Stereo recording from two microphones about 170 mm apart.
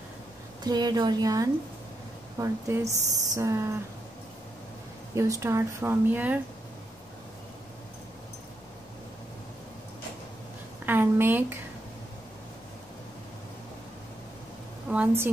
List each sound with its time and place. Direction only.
0.7 s a woman's voice: 25° right (ahead or behind)
5.1 s speech: 15° right (ahead or behind)
10.9 s a woman's voice: 10° right (ahead or behind)
14.9 s speech: 10° right (ahead or behind)